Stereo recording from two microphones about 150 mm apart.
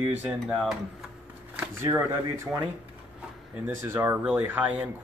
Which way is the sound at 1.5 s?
15° right (ahead or behind).